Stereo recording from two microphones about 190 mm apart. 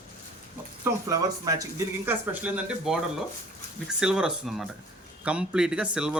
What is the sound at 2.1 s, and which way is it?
Speech, 5° right (ahead or behind).